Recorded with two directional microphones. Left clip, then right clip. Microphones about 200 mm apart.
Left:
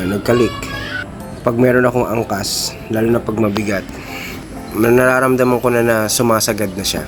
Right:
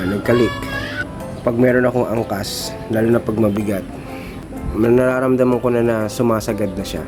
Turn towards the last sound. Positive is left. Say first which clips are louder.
# left 3 dB
turn(degrees=5)  # may be behind; listen again after turning